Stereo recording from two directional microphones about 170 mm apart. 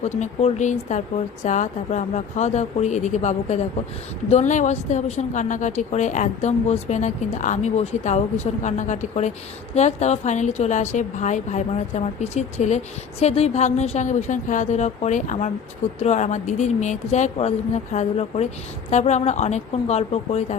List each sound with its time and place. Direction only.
0.0 s a woman's voice: 45° left (ahead or behind)